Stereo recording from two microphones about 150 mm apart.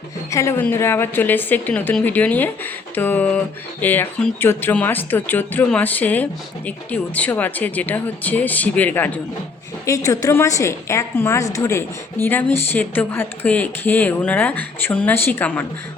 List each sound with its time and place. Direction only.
0.3 s speech: 20° left (ahead or behind)
9.8 s a woman's voice: 20° left (ahead or behind)